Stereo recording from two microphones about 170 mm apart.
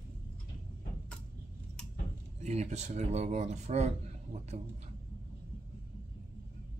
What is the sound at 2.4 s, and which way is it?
Speech, 40° right (ahead or behind).